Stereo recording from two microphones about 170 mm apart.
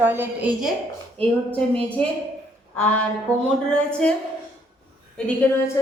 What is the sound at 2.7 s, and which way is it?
Speech, 10° left (ahead or behind).